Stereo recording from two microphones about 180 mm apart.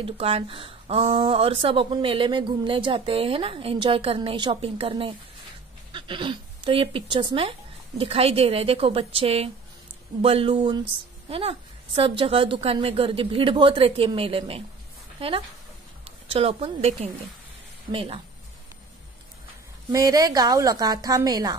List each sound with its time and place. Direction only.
0.0 s a woman's voice: 35° right (ahead or behind)
19.9 s a woman's voice: 20° right (ahead or behind)